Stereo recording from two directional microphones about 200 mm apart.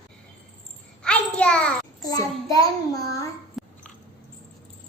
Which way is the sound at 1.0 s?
5° left (ahead or behind).